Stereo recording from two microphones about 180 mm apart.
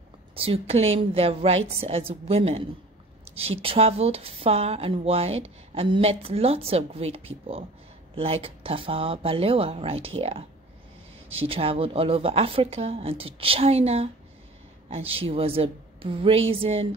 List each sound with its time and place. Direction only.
0.4 s speech: 30° right (ahead or behind)
11.3 s speech: 30° right (ahead or behind)